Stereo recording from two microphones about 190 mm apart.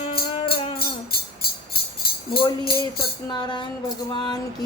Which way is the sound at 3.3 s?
25° left (ahead or behind).